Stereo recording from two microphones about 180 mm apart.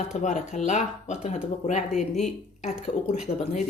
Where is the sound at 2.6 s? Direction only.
40° left (ahead or behind).